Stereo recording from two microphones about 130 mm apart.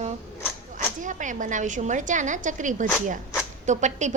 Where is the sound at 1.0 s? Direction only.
75° right (ahead or behind).